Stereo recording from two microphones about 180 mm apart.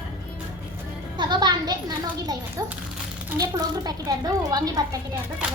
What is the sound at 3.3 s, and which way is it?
Speech, 20° right (ahead or behind).